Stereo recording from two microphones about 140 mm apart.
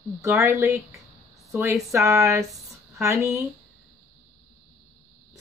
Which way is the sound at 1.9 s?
20° right (ahead or behind).